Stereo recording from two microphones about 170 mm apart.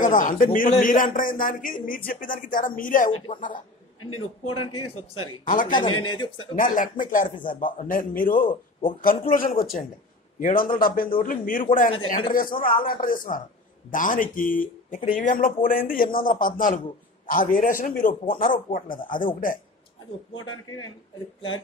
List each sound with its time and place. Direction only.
0.0 s speech: 50° left (ahead or behind)
4.5 s speech: 30° left (ahead or behind)
5.4 s speech: 50° left (ahead or behind)
5.7 s a man's voice: 30° left (ahead or behind)
6.5 s speech: 50° left (ahead or behind)
10.4 s speech: 55° left (ahead or behind)